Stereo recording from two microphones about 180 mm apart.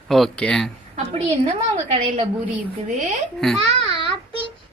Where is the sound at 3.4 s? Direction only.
Centre (ahead or behind).